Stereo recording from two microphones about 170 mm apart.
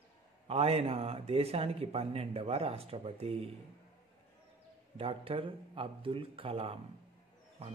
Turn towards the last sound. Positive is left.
turn(degrees=-35)  # may be behind; listen again after turning